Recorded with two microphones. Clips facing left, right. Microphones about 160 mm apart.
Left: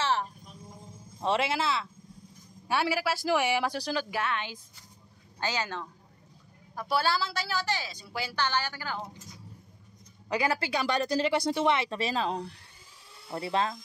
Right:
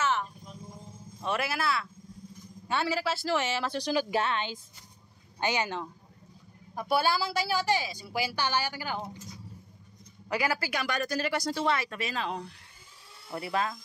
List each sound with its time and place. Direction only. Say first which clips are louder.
0.0 s a sound: even; 35° left (ahead or behind)
1.2 s speech: left 3 dB; 25° left (ahead or behind)
2.7 s speech: left 1 dB; 10° left (ahead or behind)
4.1 s a woman's voice: right 3 dB; 25° right (ahead or behind)
10.3 s speech: left 2 dB; 25° left (ahead or behind)